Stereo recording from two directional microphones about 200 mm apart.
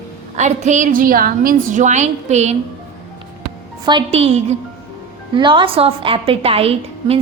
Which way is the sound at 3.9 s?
25° right (ahead or behind).